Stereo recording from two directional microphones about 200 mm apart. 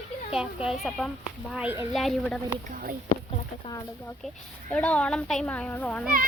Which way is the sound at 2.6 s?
40° right (ahead or behind).